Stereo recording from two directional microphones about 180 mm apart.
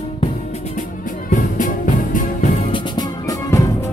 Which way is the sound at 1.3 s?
45° left (ahead or behind).